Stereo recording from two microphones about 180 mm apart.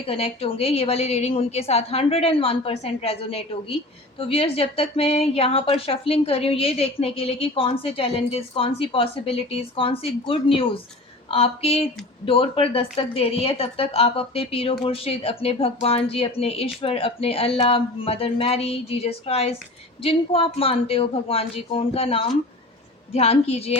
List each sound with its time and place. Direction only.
0.1 s speech: 30° left (ahead or behind)